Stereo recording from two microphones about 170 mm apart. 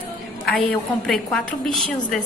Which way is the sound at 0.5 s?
Centre (ahead or behind).